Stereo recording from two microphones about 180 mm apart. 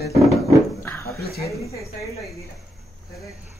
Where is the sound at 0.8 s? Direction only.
10° left (ahead or behind).